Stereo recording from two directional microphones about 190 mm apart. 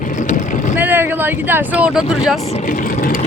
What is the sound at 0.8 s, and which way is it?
Speech, 10° right (ahead or behind).